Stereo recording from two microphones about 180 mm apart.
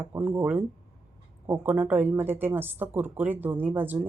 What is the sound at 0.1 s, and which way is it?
Speech, 20° right (ahead or behind).